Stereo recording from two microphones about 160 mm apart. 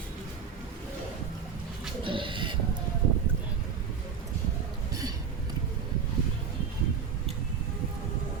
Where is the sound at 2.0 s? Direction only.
30° right (ahead or behind).